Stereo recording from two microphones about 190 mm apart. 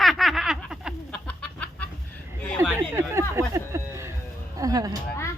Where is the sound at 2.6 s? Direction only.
15° right (ahead or behind).